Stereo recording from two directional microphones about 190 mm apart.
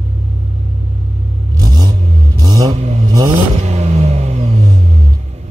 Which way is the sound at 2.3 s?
20° right (ahead or behind).